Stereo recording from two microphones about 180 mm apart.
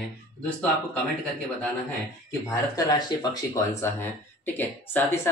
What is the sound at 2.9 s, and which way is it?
Speech, 20° left (ahead or behind).